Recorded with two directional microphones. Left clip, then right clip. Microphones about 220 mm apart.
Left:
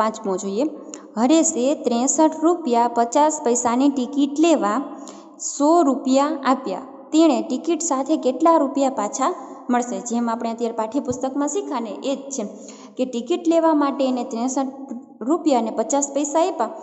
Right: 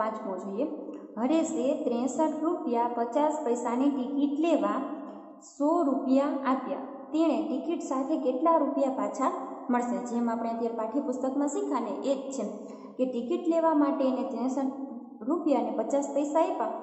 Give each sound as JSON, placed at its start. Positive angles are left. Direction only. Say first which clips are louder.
{"t": 0.2, "sound": "a woman's voice", "louder": "left 9 dB", "side_deg": 45}